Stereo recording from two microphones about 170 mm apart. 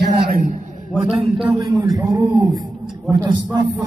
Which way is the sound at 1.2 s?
5° right (ahead or behind).